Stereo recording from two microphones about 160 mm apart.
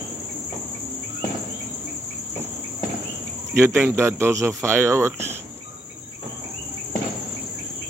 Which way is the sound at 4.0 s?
15° right (ahead or behind).